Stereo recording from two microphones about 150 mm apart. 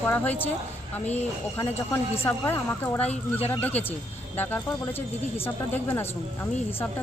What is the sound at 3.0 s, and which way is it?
Speech, 45° left (ahead or behind).